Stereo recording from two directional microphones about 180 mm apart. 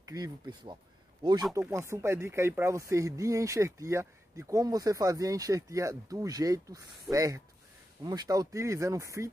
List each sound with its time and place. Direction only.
0.0 s speech: 20° right (ahead or behind)